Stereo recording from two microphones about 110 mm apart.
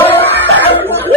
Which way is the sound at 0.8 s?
20° left (ahead or behind).